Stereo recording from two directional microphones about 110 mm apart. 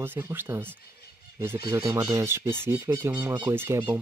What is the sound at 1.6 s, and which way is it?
Speech, 30° right (ahead or behind).